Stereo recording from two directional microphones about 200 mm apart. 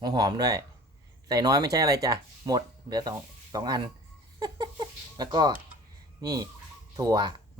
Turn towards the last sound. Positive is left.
turn(degrees=-20)  # may be behind; listen again after turning